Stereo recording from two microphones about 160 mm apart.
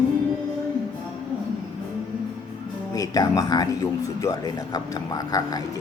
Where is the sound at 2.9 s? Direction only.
20° left (ahead or behind).